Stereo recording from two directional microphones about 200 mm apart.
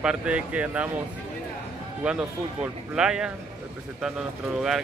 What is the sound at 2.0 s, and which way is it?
Speech, 5° right (ahead or behind).